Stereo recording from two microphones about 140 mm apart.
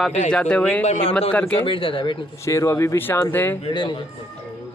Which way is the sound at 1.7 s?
40° left (ahead or behind).